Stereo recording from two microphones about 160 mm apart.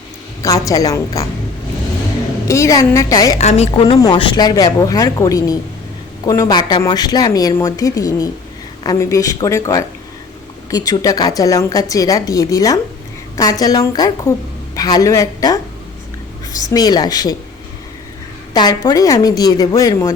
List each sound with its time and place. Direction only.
0.4 s a woman's voice: 20° left (ahead or behind)
2.5 s a woman's voice: 20° left (ahead or behind)
3.3 s a woman's voice: 45° left (ahead or behind); by 15.6 s 20° left (ahead or behind)
16.6 s a woman's voice: 25° left (ahead or behind)
18.5 s a woman's voice: 25° left (ahead or behind)